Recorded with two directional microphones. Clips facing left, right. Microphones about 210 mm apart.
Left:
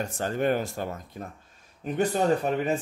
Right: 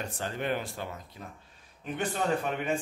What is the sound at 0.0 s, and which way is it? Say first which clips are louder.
A man's voice: left 7 dB; 45° left (ahead or behind).